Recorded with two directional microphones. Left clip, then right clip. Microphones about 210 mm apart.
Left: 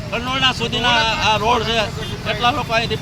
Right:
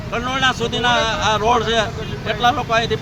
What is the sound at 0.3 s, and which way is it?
Speech, 5° right (ahead or behind).